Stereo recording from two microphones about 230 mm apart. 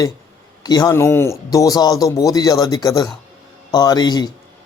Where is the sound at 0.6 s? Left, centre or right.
Centre.